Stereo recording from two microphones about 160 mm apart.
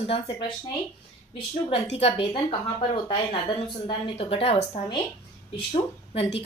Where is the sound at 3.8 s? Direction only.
35° left (ahead or behind).